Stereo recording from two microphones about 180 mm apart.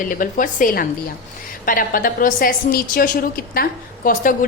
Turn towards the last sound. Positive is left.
turn(degrees=50)  # may be behind; listen again after turning